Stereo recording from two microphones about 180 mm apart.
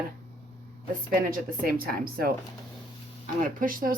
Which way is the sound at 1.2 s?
55° right (ahead or behind).